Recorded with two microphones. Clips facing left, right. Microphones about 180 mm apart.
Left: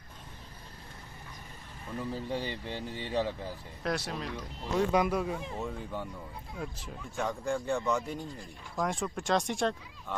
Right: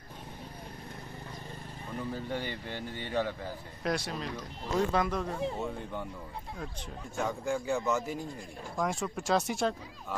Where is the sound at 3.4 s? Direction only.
5° left (ahead or behind).